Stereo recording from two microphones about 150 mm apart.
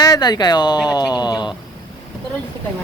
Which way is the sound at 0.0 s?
25° left (ahead or behind).